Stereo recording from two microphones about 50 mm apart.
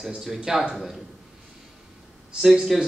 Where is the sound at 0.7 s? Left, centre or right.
Centre.